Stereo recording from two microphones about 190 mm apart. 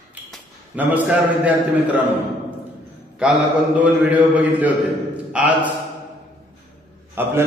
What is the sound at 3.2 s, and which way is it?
Mantra, 5° right (ahead or behind).